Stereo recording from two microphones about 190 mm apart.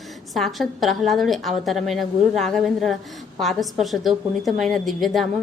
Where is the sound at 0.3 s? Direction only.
Centre (ahead or behind).